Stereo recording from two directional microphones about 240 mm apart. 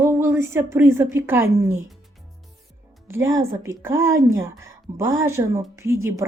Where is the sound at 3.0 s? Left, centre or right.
Centre.